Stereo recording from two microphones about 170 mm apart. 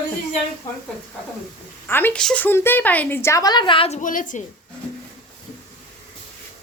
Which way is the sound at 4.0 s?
50° left (ahead or behind).